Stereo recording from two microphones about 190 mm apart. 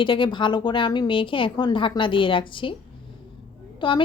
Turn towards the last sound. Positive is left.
turn(degrees=25)  # may be behind; listen again after turning